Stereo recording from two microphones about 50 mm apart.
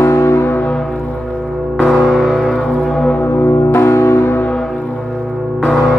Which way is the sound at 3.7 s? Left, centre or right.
Left.